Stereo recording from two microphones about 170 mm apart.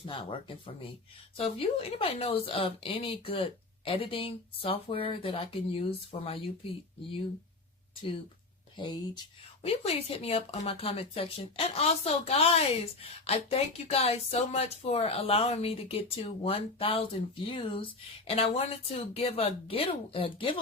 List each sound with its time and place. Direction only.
0.0 s speech: 30° left (ahead or behind)
8.7 s speech: 25° left (ahead or behind)